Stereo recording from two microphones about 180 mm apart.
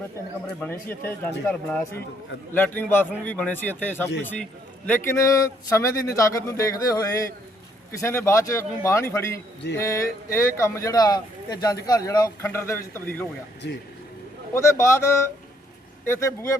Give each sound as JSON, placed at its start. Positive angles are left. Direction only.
{"t": 0.4, "sound": "a man's voice", "side_deg": 10}
{"t": 13.6, "sound": "speech", "side_deg": 75}
{"t": 14.5, "sound": "speech", "side_deg": 15}